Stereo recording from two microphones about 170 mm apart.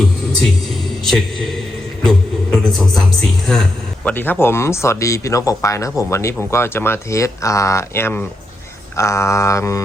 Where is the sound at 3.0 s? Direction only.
Centre (ahead or behind).